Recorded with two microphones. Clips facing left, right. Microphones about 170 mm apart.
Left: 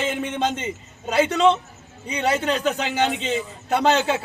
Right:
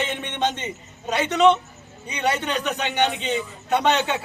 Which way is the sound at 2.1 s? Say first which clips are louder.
Left 2 dB; 30° left (ahead or behind).